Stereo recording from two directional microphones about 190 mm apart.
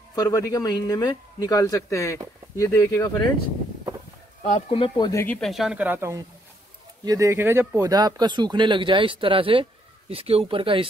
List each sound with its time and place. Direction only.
0.1 s a man's voice: 20° left (ahead or behind)
4.5 s speech: 35° left (ahead or behind)
5.2 s speech: 5° left (ahead or behind); by 10.9 s 25° right (ahead or behind)